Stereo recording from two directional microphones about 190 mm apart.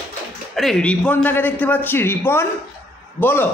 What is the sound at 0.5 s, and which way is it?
A man's voice, centre (ahead or behind).